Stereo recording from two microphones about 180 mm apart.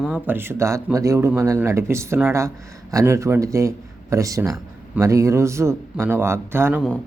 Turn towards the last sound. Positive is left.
turn(degrees=-15)  # may be behind; listen again after turning